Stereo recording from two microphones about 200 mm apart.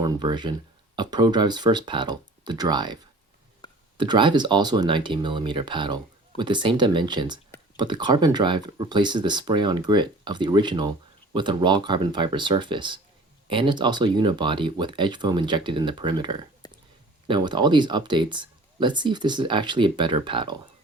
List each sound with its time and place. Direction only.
0.0 s speech: 20° right (ahead or behind)